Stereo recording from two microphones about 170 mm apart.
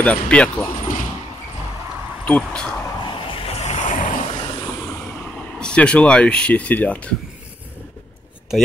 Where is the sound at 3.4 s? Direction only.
40° left (ahead or behind).